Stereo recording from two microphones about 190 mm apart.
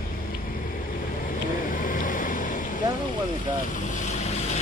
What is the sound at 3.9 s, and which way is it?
Boat, 40° left (ahead or behind).